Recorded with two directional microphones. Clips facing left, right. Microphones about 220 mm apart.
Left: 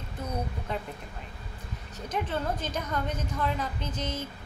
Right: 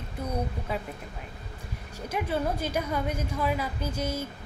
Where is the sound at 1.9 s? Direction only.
10° right (ahead or behind).